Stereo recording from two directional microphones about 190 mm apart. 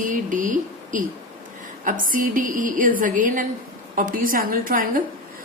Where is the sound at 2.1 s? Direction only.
45° right (ahead or behind).